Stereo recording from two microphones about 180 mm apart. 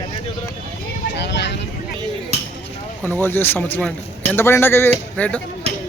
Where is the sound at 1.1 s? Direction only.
70° left (ahead or behind).